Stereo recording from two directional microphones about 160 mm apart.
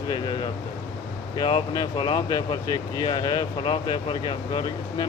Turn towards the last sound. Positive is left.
turn(degrees=25)  # may be behind; listen again after turning